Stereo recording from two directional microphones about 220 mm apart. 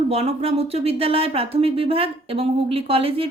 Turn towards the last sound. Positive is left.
turn(degrees=-25)  # may be behind; listen again after turning